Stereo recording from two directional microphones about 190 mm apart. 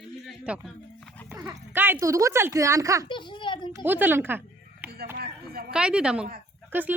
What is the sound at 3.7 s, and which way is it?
Speech, 10° right (ahead or behind).